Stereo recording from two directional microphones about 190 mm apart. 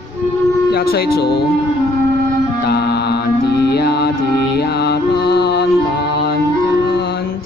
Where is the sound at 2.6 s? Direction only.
55° left (ahead or behind).